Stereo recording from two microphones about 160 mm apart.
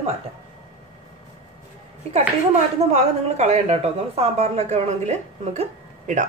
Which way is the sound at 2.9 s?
45° right (ahead or behind).